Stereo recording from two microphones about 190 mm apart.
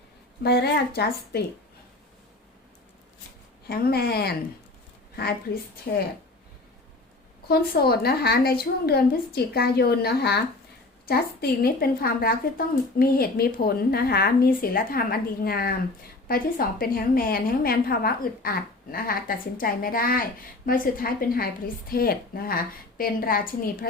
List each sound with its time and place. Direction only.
0.4 s a woman's voice: 60° left (ahead or behind)
3.7 s a woman's voice: 55° left (ahead or behind)
7.4 s a woman's voice: 55° left (ahead or behind)